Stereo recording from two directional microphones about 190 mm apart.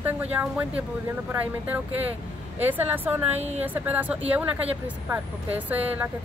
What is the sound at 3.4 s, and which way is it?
Speech, 35° right (ahead or behind).